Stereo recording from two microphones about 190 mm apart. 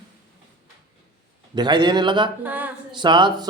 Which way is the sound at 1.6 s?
25° right (ahead or behind).